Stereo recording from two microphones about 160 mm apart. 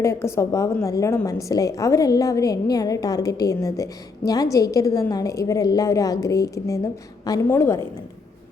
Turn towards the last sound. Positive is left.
turn(degrees=15)  # may be behind; listen again after turning